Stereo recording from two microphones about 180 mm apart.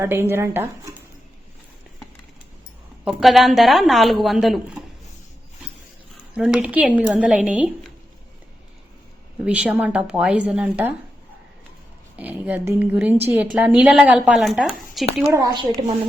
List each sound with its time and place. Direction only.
0.0 s speech: 15° right (ahead or behind)
3.0 s a woman's voice: centre (ahead or behind)
6.3 s speech: 5° right (ahead or behind)
9.4 s speech: 5° right (ahead or behind)
12.1 s a woman's voice: 10° right (ahead or behind)
15.3 s a woman's voice: 20° right (ahead or behind)